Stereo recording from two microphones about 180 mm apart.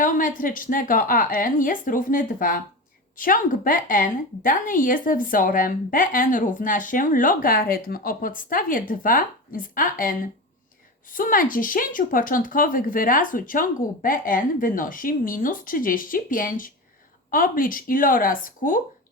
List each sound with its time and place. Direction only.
0.0 s speech: 50° left (ahead or behind)